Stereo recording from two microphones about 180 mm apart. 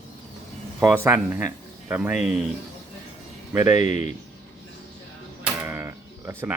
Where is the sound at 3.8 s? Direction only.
40° left (ahead or behind).